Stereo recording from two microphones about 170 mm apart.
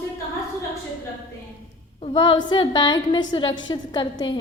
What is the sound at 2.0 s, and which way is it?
A woman's voice, 30° left (ahead or behind).